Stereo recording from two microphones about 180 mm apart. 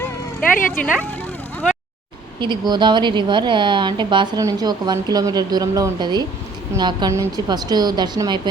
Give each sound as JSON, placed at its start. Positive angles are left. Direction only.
{"t": 0.7, "sound": "speech", "side_deg": 5}
{"t": 2.4, "sound": "a woman's voice", "side_deg": -25}